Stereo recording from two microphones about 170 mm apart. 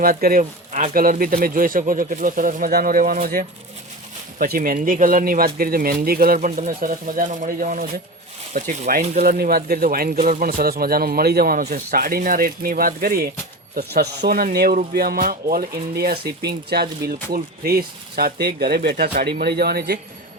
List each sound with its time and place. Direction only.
0.0 s speech: 60° right (ahead or behind); by 9.2 s 40° right (ahead or behind)
9.2 s speech: 60° right (ahead or behind)
13.7 s speech: 70° right (ahead or behind)